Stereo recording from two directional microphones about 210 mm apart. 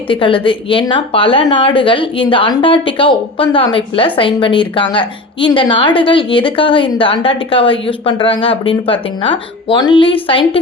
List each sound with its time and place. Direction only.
0.1 s a woman's voice: 25° left (ahead or behind)